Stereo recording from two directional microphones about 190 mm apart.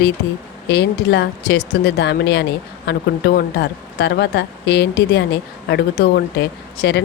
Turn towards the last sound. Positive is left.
turn(degrees=60)  # may be behind; listen again after turning